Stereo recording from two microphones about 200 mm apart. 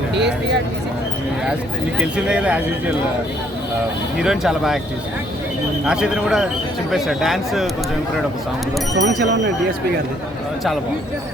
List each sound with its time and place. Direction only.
0.1 s speech: 60° right (ahead or behind)
2.0 s speech: 5° right (ahead or behind)
4.2 s speech: 5° right (ahead or behind)
5.8 s speech: 5° right (ahead or behind)
9.0 s speech: 60° right (ahead or behind)